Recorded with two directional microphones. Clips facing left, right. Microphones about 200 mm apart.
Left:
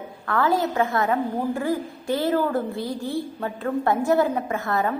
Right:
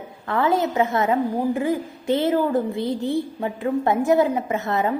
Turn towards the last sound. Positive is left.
turn(degrees=-20)  # may be behind; listen again after turning